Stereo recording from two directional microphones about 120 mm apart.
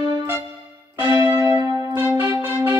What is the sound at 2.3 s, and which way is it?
Music, 20° right (ahead or behind).